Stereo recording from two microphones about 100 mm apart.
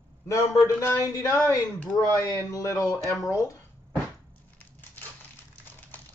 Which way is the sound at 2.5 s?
35° left (ahead or behind).